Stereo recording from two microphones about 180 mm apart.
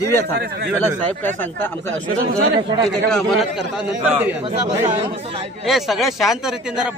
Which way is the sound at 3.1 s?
Centre (ahead or behind).